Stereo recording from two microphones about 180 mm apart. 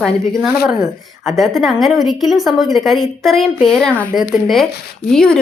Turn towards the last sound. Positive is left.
turn(degrees=5)  # may be behind; listen again after turning